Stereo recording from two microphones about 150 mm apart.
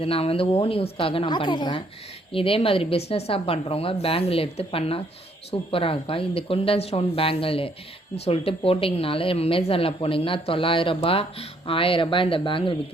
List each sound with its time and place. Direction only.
0.0 s a woman's voice: 40° left (ahead or behind)